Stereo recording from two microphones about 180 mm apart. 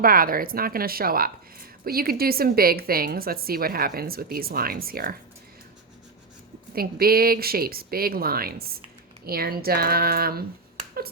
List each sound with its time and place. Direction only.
0.0 s speech: 55° right (ahead or behind)
6.7 s speech: 55° right (ahead or behind)